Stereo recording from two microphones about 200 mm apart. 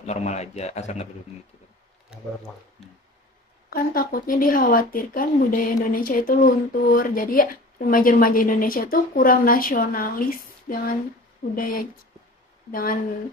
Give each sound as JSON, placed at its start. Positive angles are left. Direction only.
{"t": 0.0, "sound": "speech", "side_deg": 35}
{"t": 3.7, "sound": "speech", "side_deg": 45}